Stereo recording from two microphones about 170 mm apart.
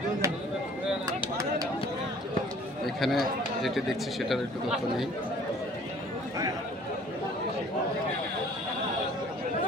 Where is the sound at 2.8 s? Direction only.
Centre (ahead or behind).